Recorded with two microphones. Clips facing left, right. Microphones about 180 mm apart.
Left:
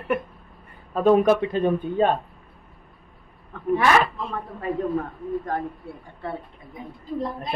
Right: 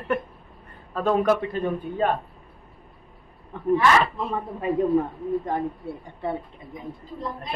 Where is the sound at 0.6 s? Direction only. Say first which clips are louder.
Left 6 dB; 15° left (ahead or behind).